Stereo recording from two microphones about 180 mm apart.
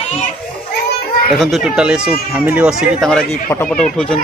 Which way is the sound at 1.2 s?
Centre (ahead or behind).